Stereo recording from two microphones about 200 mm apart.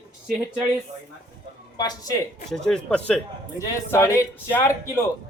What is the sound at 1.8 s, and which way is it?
Speech, 20° left (ahead or behind).